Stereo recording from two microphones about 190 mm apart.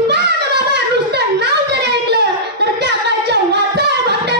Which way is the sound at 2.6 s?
60° right (ahead or behind).